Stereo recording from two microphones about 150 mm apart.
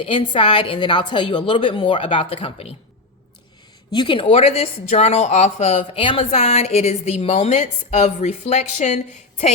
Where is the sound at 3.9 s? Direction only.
30° left (ahead or behind).